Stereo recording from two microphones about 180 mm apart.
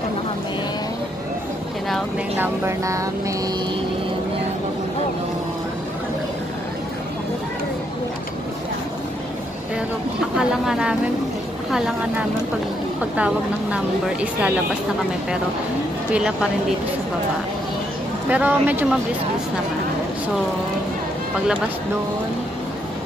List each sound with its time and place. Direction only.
2.3 s a woman's voice: 10° right (ahead or behind)
10.3 s a woman's voice: 5° right (ahead or behind)
16.1 s speech: 5° right (ahead or behind)
18.3 s a woman's voice: 10° right (ahead or behind)